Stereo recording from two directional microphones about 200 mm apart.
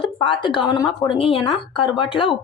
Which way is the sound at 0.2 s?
25° left (ahead or behind).